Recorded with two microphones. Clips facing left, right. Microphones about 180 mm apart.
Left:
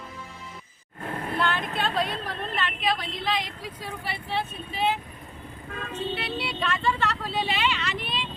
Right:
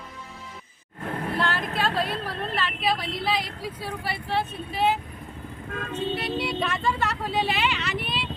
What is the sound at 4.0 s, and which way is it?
Vehicle, 40° right (ahead or behind).